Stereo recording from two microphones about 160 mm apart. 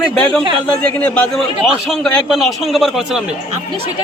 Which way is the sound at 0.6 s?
10° left (ahead or behind).